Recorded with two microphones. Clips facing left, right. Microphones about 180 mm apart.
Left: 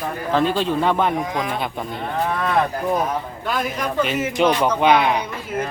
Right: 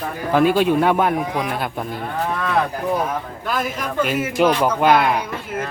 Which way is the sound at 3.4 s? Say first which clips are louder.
Even; 5° right (ahead or behind).